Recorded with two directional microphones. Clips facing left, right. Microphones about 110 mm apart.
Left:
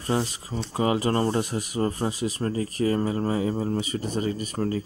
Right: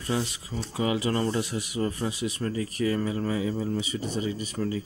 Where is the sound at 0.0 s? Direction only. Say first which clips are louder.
Left 3 dB; 40° left (ahead or behind).